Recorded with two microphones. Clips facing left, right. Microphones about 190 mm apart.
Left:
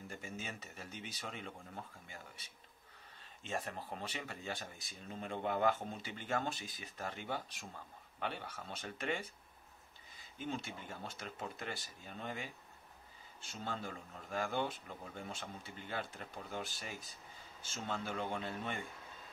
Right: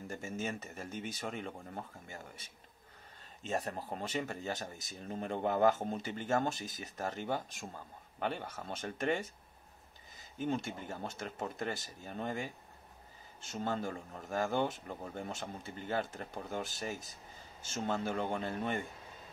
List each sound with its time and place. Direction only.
0.1 s speech: 45° right (ahead or behind)
3.4 s speech: 40° right (ahead or behind)